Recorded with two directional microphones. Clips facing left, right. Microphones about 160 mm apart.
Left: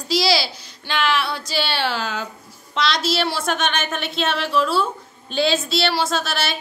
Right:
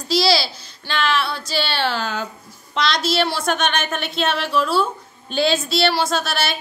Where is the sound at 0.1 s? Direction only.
15° left (ahead or behind).